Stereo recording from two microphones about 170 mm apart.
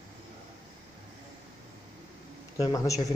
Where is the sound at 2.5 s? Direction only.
20° left (ahead or behind).